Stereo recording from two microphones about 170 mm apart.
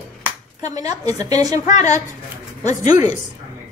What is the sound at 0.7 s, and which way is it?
Speech, 20° right (ahead or behind).